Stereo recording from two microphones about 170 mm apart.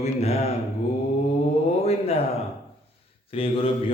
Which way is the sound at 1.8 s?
40° left (ahead or behind).